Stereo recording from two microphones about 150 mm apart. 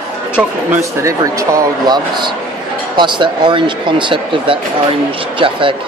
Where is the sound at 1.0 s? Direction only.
20° right (ahead or behind).